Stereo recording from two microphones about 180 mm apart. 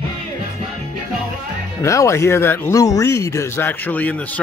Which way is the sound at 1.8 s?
15° left (ahead or behind).